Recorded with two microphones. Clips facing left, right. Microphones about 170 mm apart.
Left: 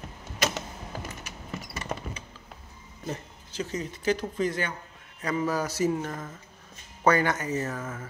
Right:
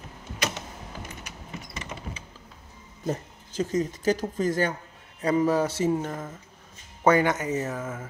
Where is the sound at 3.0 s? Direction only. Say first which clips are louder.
Right 5 dB; 45° right (ahead or behind).